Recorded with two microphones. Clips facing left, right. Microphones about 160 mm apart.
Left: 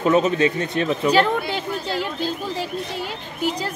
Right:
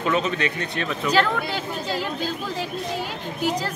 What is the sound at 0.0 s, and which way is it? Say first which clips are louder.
A man's voice: left 6 dB; 20° left (ahead or behind).